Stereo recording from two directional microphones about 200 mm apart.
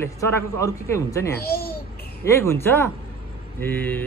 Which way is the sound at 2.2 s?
15° left (ahead or behind).